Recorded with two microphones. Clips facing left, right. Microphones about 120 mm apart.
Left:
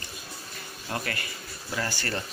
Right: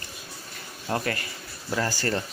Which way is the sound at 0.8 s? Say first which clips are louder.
Right 5 dB; 30° right (ahead or behind).